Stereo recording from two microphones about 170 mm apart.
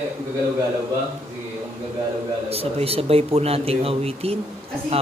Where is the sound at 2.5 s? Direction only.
35° right (ahead or behind).